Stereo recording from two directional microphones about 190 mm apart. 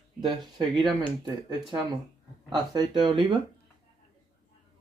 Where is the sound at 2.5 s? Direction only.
20° right (ahead or behind).